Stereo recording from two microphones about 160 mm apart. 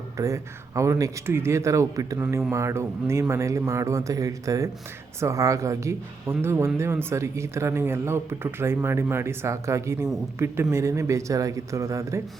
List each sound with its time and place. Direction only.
0.2 s speech: 20° right (ahead or behind)